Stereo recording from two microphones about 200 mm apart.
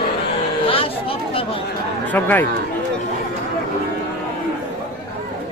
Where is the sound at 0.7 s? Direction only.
25° left (ahead or behind).